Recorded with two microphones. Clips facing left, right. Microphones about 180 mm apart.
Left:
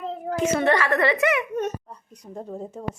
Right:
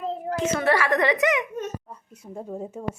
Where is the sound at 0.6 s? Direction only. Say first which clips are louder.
Right 1 dB; 10° right (ahead or behind).